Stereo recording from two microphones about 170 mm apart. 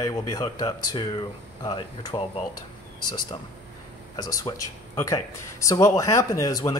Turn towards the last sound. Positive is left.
turn(degrees=20)  # may be behind; listen again after turning